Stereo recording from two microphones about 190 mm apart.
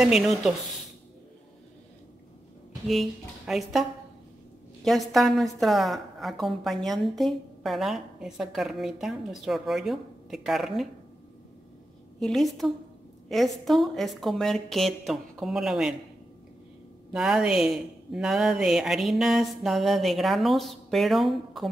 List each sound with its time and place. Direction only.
0.0 s a woman's voice: centre (ahead or behind)
2.9 s a woman's voice: centre (ahead or behind)
4.8 s a woman's voice: centre (ahead or behind)
12.2 s a woman's voice: centre (ahead or behind)
17.1 s a woman's voice: 5° right (ahead or behind)